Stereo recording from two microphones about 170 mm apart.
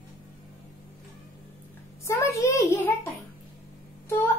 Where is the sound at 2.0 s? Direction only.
15° left (ahead or behind).